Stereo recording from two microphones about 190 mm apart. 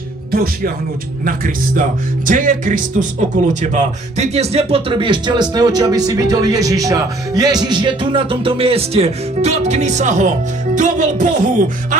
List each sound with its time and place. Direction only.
1.2 s speech: 45° right (ahead or behind)